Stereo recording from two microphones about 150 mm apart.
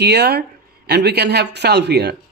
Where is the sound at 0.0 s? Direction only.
90° right.